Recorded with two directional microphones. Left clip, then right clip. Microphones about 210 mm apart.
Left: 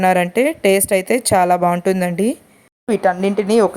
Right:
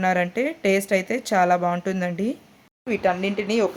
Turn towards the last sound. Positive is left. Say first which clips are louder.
# left 8 dB
turn(degrees=25)  # may be behind; listen again after turning